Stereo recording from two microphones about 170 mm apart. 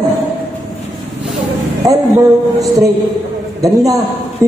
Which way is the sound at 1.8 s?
20° right (ahead or behind).